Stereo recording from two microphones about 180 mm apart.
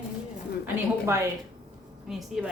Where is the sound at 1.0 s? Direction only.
15° right (ahead or behind).